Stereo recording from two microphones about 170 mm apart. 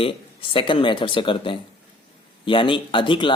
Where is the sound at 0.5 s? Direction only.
30° left (ahead or behind).